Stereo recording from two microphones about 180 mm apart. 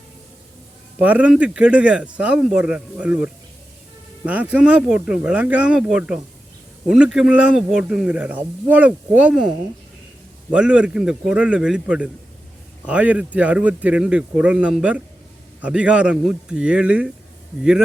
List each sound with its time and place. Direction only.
0.9 s speech: 10° right (ahead or behind)
4.3 s speech: 10° right (ahead or behind)
10.5 s speech: 5° right (ahead or behind)